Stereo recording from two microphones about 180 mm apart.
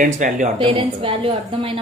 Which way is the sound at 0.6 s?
30° right (ahead or behind).